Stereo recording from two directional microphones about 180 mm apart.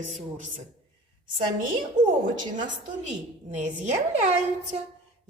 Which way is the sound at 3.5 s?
45° right (ahead or behind).